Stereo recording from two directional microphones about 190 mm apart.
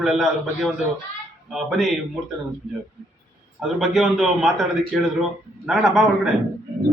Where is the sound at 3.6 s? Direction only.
Centre (ahead or behind).